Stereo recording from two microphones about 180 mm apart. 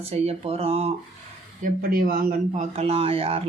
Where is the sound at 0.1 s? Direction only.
35° right (ahead or behind).